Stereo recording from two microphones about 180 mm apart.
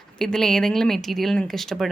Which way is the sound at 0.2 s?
5° left (ahead or behind).